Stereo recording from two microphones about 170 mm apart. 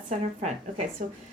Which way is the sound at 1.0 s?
55° right (ahead or behind).